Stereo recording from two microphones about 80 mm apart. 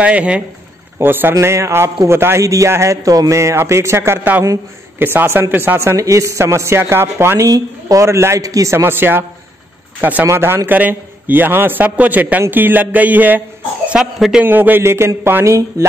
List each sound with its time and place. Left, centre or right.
0.0 s speech: centre
0.9 s speech: right
1.3 s a man's voice: right
5.8 s a man's voice: right
7.4 s a man's voice: right
13.8 s speech: centre
14.4 s a man's voice: right